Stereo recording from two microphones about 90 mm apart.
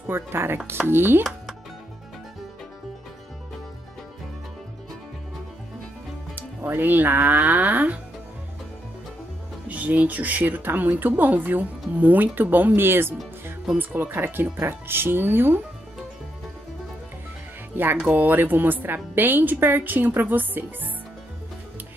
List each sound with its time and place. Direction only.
0.0 s speech: 25° right (ahead or behind)
6.3 s speech: 25° right (ahead or behind)
9.7 s speech: 15° right (ahead or behind)
17.9 s speech: 15° right (ahead or behind)